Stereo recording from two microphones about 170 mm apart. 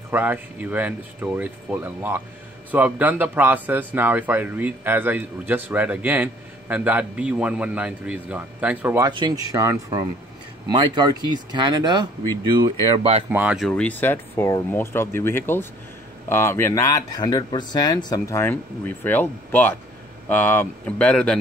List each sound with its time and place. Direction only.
0.1 s a man's voice: 10° right (ahead or behind)
9.0 s speech: 25° right (ahead or behind)
13.3 s a man's voice: 10° right (ahead or behind)
13.7 s speech: 5° left (ahead or behind)